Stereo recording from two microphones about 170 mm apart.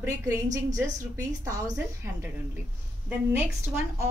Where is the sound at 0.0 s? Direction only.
15° right (ahead or behind).